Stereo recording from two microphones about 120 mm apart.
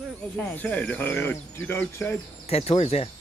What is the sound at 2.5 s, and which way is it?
Speech, 60° left (ahead or behind).